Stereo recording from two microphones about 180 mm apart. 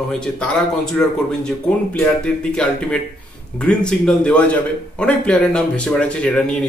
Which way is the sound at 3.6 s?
5° left (ahead or behind).